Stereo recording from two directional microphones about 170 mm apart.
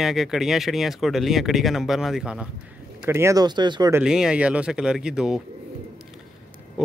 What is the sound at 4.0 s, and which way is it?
Speech, 5° right (ahead or behind).